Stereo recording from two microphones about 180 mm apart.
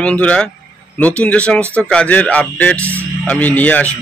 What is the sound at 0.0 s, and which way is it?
Speech, 5° left (ahead or behind).